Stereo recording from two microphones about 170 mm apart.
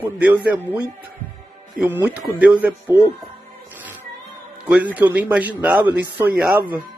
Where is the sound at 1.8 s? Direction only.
10° right (ahead or behind).